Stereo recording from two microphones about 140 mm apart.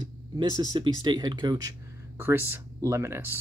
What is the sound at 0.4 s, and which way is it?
Speech, 30° right (ahead or behind).